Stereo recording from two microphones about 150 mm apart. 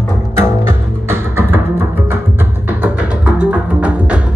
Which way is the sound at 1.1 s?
15° right (ahead or behind).